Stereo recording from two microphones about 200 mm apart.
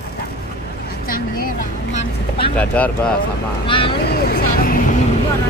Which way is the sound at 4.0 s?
50° left (ahead or behind).